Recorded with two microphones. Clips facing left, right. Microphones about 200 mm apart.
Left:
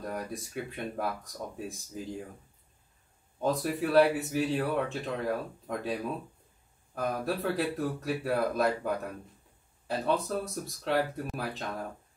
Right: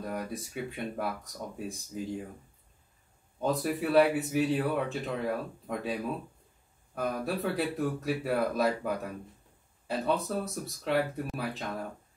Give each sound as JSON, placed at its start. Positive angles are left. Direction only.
{"t": 0.0, "sound": "speech", "side_deg": 0}
{"t": 3.3, "sound": "speech", "side_deg": 0}
{"t": 7.0, "sound": "speech", "side_deg": 0}